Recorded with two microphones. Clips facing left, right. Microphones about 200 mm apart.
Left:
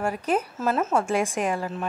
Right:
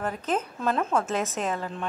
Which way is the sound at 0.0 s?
10° left (ahead or behind).